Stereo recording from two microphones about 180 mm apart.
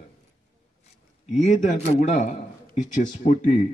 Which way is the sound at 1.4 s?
40° left (ahead or behind).